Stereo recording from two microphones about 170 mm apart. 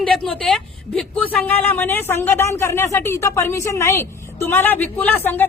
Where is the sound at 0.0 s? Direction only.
5° left (ahead or behind).